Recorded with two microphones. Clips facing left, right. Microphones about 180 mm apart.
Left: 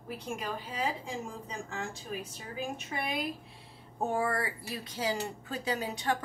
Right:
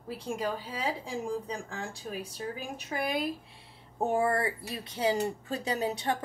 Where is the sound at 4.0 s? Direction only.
25° right (ahead or behind).